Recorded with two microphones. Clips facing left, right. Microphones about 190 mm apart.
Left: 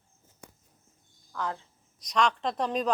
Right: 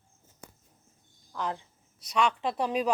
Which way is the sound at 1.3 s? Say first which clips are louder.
Even; 20° right (ahead or behind).